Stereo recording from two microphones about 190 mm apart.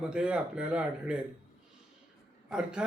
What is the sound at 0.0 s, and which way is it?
Speech, 5° right (ahead or behind).